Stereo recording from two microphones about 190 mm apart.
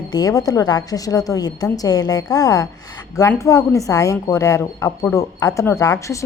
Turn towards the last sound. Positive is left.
turn(degrees=15)  # may be behind; listen again after turning